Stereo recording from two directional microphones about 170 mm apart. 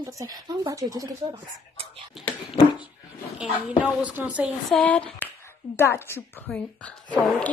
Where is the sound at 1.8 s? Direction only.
35° right (ahead or behind).